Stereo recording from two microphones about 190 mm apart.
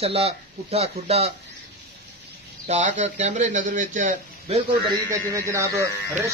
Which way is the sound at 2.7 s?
40° right (ahead or behind).